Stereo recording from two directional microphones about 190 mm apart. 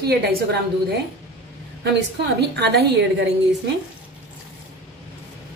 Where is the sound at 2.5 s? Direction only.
60° right (ahead or behind).